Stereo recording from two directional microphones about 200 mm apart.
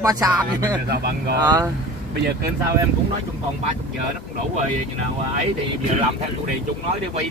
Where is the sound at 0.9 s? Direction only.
50° right (ahead or behind).